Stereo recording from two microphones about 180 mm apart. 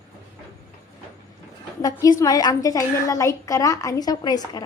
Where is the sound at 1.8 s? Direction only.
20° left (ahead or behind).